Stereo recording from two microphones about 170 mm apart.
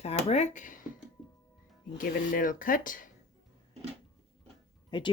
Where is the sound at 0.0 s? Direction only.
40° left (ahead or behind).